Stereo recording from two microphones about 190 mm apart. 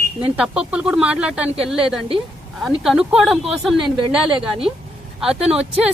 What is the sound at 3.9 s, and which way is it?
Speech, 25° right (ahead or behind).